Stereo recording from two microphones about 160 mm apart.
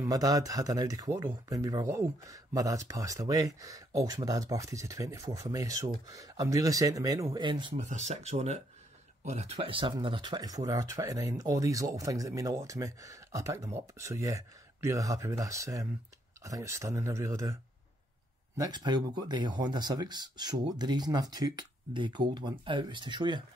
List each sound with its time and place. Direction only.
0.0 s speech: 20° right (ahead or behind)
7.7 s speech: 45° right (ahead or behind); by 17.6 s 20° right (ahead or behind)
18.6 s speech: 25° right (ahead or behind)